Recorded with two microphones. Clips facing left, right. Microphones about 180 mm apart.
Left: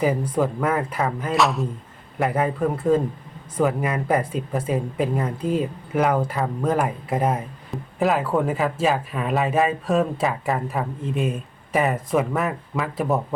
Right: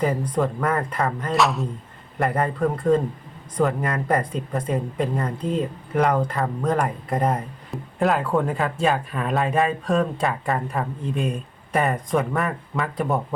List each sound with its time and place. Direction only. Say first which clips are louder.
0.0 s a man's voice: left 1 dB; 10° left (ahead or behind)